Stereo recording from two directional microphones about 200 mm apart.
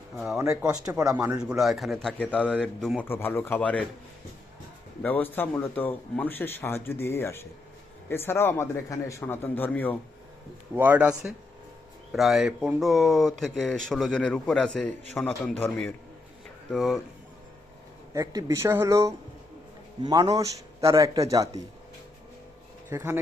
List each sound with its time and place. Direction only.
0.7 s a man's voice: 15° right (ahead or behind); by 3.8 s 5° left (ahead or behind)
5.0 s speech: 10° left (ahead or behind)
10.8 s a man's voice: 10° right (ahead or behind)
18.1 s a man's voice: 15° right (ahead or behind)
22.9 s a man's voice: 10° right (ahead or behind)